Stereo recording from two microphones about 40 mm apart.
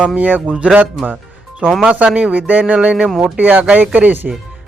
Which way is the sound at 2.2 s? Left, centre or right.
Right.